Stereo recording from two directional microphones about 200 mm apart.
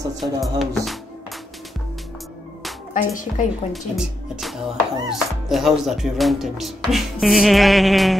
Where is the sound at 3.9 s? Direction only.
Centre (ahead or behind).